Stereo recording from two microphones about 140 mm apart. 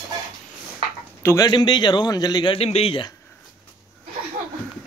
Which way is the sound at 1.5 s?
30° left (ahead or behind).